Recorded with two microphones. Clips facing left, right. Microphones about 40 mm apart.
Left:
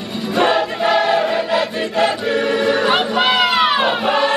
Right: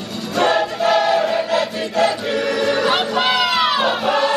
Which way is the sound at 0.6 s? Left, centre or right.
Centre.